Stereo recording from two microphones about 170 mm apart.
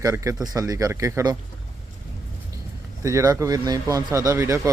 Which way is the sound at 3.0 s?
15° right (ahead or behind).